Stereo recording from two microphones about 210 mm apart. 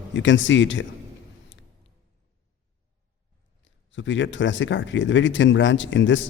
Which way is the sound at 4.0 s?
60° left (ahead or behind).